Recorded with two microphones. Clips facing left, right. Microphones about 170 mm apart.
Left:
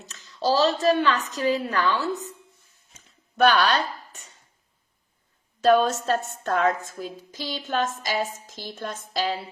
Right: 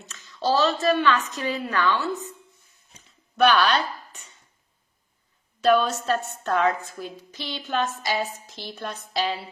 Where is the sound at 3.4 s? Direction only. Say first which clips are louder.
Even; 40° left (ahead or behind).